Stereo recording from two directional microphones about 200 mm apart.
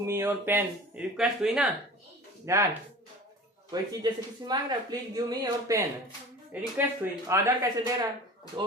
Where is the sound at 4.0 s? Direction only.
20° right (ahead or behind).